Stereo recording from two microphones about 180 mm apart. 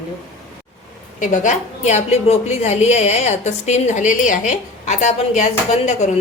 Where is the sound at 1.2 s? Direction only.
45° left (ahead or behind).